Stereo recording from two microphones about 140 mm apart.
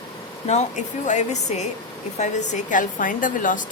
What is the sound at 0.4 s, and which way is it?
A woman's voice, 55° left (ahead or behind).